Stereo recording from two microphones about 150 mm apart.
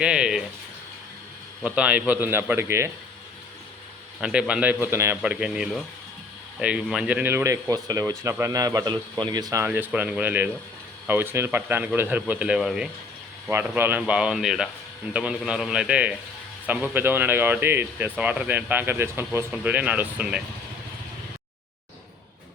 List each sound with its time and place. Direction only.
0.0 s speech: 5° right (ahead or behind)
1.6 s speech: 10° right (ahead or behind)
4.2 s a man's voice: 5° right (ahead or behind)
13.5 s a man's voice: 15° right (ahead or behind)